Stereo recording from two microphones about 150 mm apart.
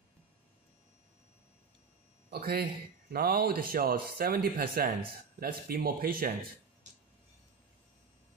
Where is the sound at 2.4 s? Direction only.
90° right.